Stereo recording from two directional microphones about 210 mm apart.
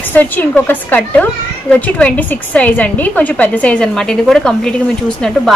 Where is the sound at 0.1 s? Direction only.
10° left (ahead or behind).